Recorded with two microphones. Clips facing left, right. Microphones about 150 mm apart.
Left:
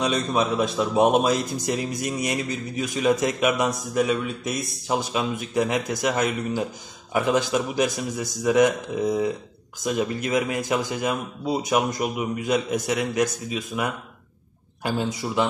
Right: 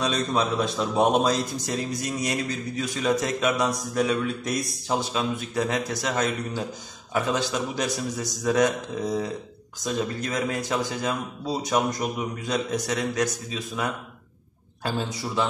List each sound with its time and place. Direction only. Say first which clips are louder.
0.0 s a man's voice: left 2 dB; 15° left (ahead or behind)